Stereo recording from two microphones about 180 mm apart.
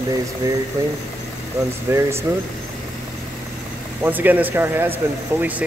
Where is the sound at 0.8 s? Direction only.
20° right (ahead or behind).